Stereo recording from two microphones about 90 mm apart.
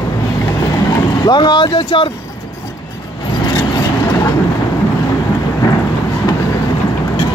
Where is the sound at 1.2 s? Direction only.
60° left (ahead or behind); by 2.0 s 75° left (ahead or behind).